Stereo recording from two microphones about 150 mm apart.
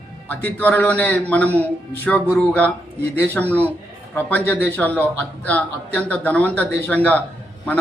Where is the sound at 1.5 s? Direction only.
15° right (ahead or behind).